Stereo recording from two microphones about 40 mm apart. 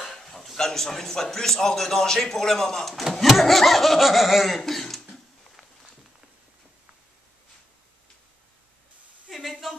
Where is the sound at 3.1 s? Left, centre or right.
Centre.